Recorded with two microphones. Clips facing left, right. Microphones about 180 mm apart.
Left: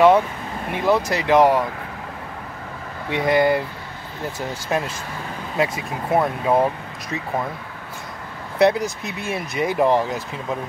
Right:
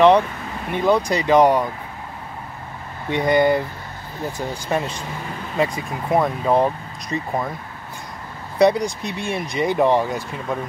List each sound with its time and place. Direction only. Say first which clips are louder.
0.7 s speech: right 2 dB; 5° left (ahead or behind)
3.1 s speech: right 1 dB; 5° left (ahead or behind)
4.6 s speech: even; centre (ahead or behind)
8.5 s speech: right 1 dB; 5° left (ahead or behind)